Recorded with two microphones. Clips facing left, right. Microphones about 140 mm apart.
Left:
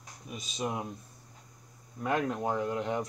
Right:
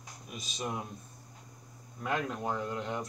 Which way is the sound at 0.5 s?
20° left (ahead or behind).